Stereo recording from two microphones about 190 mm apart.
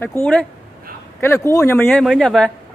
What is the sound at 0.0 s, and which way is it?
Speech, 10° left (ahead or behind).